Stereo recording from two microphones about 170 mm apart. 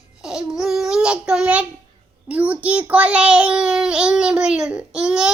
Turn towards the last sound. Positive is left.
turn(degrees=-5)  # may be behind; listen again after turning